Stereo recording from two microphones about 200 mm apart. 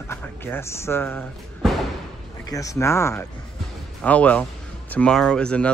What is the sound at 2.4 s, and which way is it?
Speech, 15° left (ahead or behind).